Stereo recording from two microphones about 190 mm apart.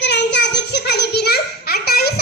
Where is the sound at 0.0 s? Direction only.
65° left (ahead or behind).